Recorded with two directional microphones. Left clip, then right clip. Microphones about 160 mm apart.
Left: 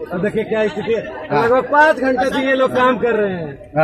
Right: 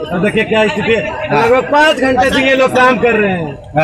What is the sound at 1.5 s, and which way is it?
A man's voice, 5° left (ahead or behind).